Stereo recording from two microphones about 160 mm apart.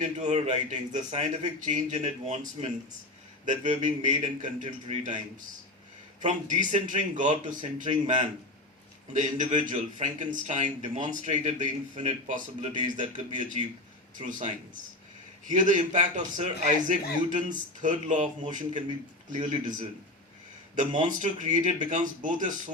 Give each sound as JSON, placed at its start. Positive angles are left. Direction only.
{"t": 0.0, "sound": "a man's voice", "side_deg": -45}
{"t": 6.2, "sound": "a man's voice", "side_deg": -55}
{"t": 9.1, "sound": "a man's voice", "side_deg": -50}
{"t": 20.7, "sound": "a man's voice", "side_deg": -50}